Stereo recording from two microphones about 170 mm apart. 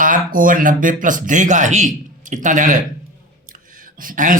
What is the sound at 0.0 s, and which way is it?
Speech, 50° right (ahead or behind).